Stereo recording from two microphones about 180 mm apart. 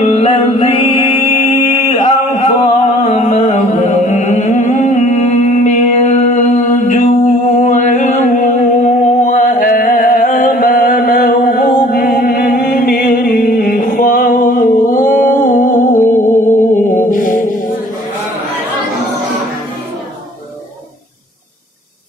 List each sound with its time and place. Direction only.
0.0 s music: 35° left (ahead or behind)